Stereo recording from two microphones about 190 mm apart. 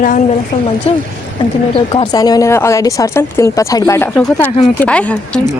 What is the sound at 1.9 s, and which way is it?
Speech, 20° left (ahead or behind).